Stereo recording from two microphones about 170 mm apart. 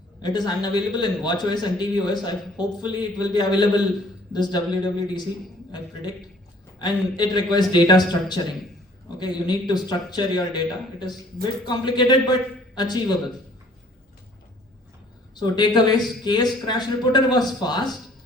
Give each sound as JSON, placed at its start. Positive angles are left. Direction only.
{"t": 0.2, "sound": "a man's voice", "side_deg": 25}
{"t": 6.7, "sound": "a man's voice", "side_deg": 25}
{"t": 11.6, "sound": "a man's voice", "side_deg": 25}
{"t": 15.4, "sound": "a man's voice", "side_deg": 25}